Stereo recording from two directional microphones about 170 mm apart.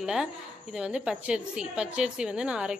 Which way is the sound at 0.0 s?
5° right (ahead or behind).